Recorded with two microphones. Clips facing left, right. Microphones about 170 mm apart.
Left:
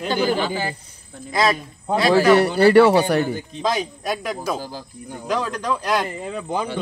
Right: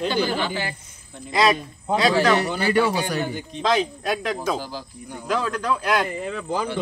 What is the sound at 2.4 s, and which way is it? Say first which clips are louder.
Speech: left 8 dB; 65° left (ahead or behind).